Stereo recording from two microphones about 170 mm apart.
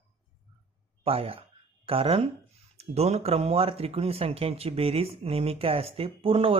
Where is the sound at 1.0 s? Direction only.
35° right (ahead or behind).